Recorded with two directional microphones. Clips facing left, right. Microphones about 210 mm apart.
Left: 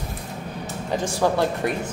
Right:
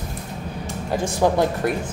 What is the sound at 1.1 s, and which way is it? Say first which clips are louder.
Speech: right 3 dB; 15° right (ahead or behind).